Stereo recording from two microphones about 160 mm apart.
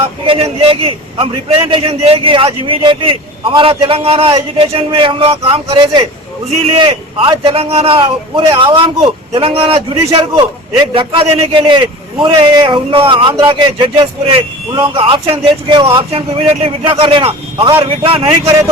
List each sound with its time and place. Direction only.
0.3 s a man's voice: 35° right (ahead or behind)
17.6 s speech: 15° right (ahead or behind)
18.0 s a man's voice: 35° right (ahead or behind)